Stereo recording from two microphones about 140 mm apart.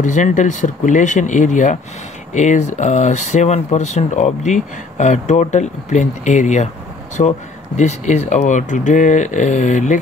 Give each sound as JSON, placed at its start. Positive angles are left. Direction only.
{"t": 0.0, "sound": "speech", "side_deg": 65}